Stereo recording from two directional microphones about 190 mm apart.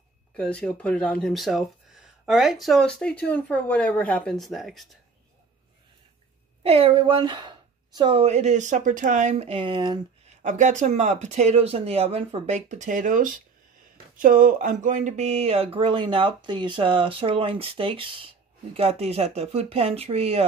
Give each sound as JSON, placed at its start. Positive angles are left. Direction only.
{"t": 0.4, "sound": "speech", "side_deg": 5}
{"t": 6.6, "sound": "speech", "side_deg": -30}
{"t": 10.4, "sound": "speech", "side_deg": -40}